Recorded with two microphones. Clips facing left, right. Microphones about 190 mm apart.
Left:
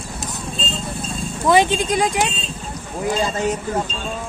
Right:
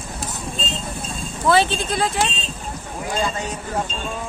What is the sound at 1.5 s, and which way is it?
Speech, 15° left (ahead or behind).